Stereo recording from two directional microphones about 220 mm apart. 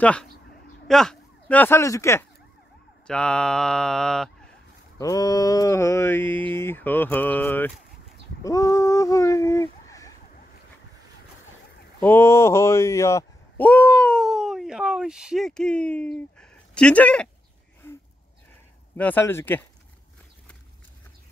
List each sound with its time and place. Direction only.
0.0 s speech: 5° left (ahead or behind)
4.9 s speech: 15° left (ahead or behind)
8.5 s a sound: 15° left (ahead or behind)
12.0 s speech: 10° left (ahead or behind)
18.9 s speech: 10° left (ahead or behind)